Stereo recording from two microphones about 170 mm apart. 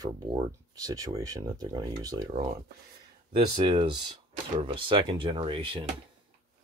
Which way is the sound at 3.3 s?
30° right (ahead or behind).